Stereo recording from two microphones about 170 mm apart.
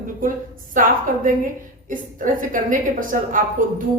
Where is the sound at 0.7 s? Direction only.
50° right (ahead or behind).